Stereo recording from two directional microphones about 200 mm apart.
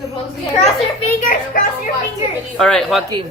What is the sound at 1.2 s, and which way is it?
Speech, 40° left (ahead or behind).